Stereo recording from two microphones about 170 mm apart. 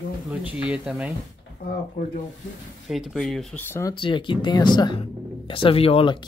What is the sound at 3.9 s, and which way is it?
Speech, 30° left (ahead or behind).